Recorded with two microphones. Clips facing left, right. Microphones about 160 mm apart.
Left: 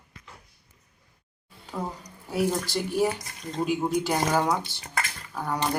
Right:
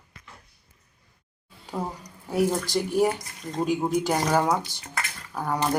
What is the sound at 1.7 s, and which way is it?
Speech, 15° right (ahead or behind).